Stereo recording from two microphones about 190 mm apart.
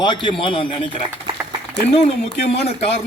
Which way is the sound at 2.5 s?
30° left (ahead or behind).